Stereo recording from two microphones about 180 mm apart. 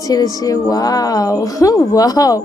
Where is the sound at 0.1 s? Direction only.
20° left (ahead or behind).